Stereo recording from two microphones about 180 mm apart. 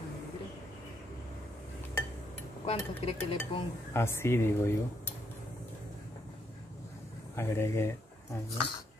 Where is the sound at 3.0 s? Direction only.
30° left (ahead or behind).